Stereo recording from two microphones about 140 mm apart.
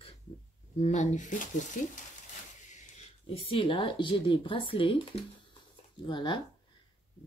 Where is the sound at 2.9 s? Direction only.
40° left (ahead or behind).